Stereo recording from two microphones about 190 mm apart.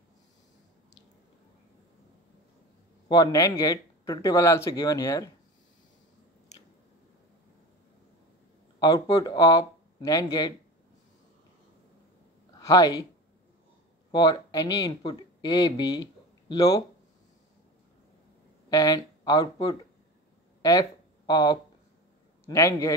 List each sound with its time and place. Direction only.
3.1 s speech: 20° left (ahead or behind)
8.7 s speech: 20° left (ahead or behind)
12.5 s speech: 20° left (ahead or behind)
14.1 s speech: 20° left (ahead or behind)
18.7 s speech: 20° left (ahead or behind)
21.3 s a man's voice: 20° left (ahead or behind)